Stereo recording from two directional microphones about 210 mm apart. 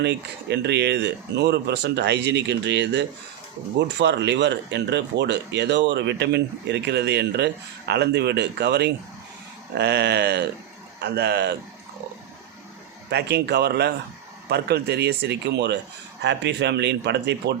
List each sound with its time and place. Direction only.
0.0 s speech: 55° right (ahead or behind)
13.1 s speech: 50° right (ahead or behind)